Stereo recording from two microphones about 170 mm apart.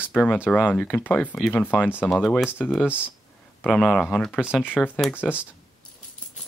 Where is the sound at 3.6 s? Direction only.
5° left (ahead or behind).